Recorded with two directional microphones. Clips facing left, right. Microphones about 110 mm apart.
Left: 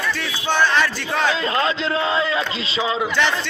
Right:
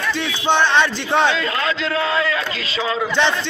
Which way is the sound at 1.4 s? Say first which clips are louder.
Left 1 dB; 30° left (ahead or behind).